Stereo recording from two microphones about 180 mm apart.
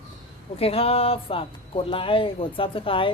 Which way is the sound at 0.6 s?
35° left (ahead or behind).